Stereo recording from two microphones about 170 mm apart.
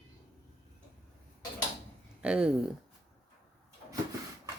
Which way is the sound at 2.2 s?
5° right (ahead or behind).